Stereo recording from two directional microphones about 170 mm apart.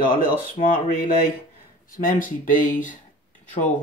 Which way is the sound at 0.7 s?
55° left (ahead or behind).